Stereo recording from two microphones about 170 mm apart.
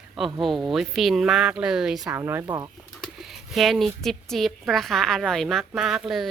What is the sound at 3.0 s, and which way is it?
A woman's voice, centre (ahead or behind).